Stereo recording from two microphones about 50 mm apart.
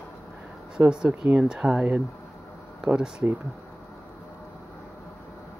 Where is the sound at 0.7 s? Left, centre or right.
Right.